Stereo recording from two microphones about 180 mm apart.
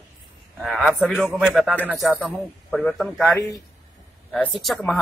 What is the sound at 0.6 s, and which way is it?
A man's voice, centre (ahead or behind).